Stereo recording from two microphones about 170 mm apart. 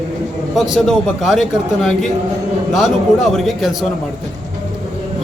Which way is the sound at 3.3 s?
Centre (ahead or behind).